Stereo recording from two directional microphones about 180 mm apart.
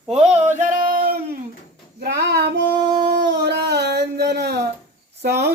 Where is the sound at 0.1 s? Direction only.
40° right (ahead or behind).